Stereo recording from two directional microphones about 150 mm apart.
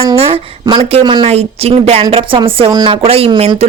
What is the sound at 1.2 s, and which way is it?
A woman's voice, 45° right (ahead or behind).